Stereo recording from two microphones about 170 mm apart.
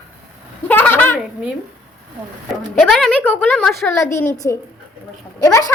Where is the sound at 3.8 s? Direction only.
15° left (ahead or behind).